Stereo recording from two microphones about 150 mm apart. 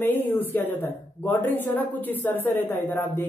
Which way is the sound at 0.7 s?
10° left (ahead or behind).